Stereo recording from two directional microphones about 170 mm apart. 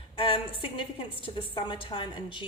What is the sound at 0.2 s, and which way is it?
A woman's voice, 30° left (ahead or behind).